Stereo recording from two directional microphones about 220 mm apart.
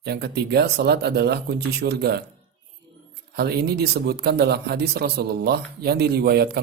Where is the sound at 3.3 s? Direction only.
45° right (ahead or behind).